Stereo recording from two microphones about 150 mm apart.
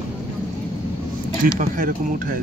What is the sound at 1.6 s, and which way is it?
Speech, 60° right (ahead or behind).